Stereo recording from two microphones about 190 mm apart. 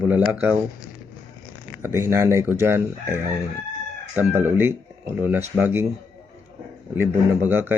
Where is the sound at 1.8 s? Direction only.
15° right (ahead or behind).